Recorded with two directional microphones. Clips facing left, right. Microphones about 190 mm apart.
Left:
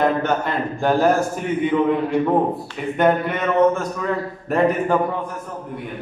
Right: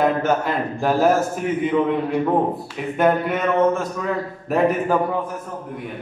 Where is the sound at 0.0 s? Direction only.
5° right (ahead or behind).